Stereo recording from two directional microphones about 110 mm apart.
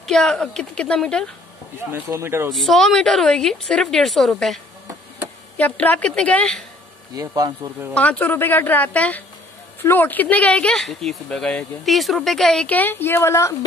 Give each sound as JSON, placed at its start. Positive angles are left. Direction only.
{"t": 0.0, "sound": "speech", "side_deg": 5}
{"t": 1.9, "sound": "speech", "side_deg": -25}
{"t": 2.5, "sound": "a woman's voice", "side_deg": 0}
{"t": 5.6, "sound": "speech", "side_deg": 15}
{"t": 7.2, "sound": "speech", "side_deg": -35}
{"t": 7.9, "sound": "speech", "side_deg": 15}
{"t": 12.6, "sound": "a woman's voice", "side_deg": 15}